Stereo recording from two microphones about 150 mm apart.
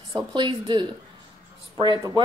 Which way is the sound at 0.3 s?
30° right (ahead or behind).